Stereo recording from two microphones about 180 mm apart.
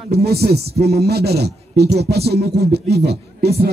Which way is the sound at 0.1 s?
60° right (ahead or behind).